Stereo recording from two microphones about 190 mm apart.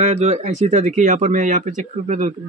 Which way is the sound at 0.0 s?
35° right (ahead or behind).